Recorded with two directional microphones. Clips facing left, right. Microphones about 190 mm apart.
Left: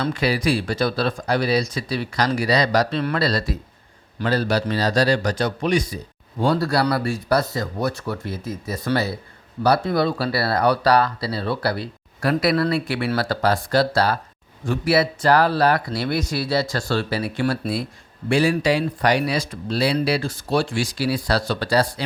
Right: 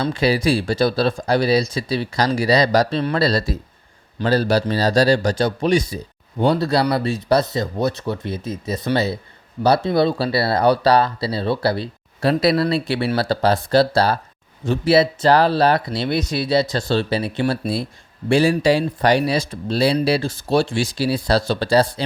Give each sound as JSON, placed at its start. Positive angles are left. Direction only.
{"t": 0.0, "sound": "a man's voice", "side_deg": -30}
{"t": 18.3, "sound": "speech", "side_deg": -30}